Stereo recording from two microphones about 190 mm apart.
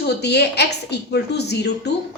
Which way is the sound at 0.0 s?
60° left (ahead or behind).